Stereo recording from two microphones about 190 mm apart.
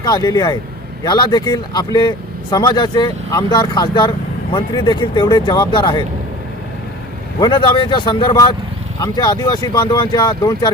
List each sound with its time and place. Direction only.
0.0 s speech: 20° left (ahead or behind)
7.3 s speech: 25° left (ahead or behind)